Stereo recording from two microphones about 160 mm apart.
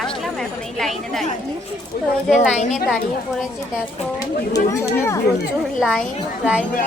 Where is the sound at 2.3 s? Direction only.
45° left (ahead or behind).